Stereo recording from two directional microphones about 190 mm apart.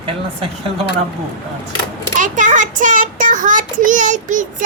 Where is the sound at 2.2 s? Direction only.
40° right (ahead or behind).